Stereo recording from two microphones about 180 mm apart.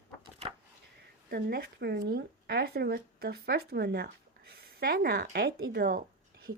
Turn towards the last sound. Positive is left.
turn(degrees=-55)  # may be behind; listen again after turning